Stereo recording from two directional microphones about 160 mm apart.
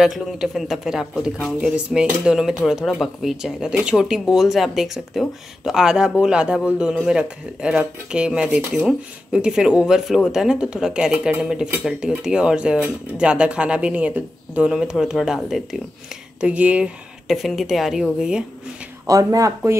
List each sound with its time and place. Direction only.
0.0 s speech: 5° right (ahead or behind)
19.0 s speech: 20° right (ahead or behind)